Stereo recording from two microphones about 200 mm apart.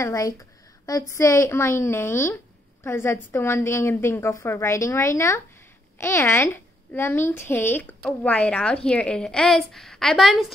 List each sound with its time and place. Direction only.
0.0 s a woman's voice: 15° left (ahead or behind); by 10.4 s centre (ahead or behind)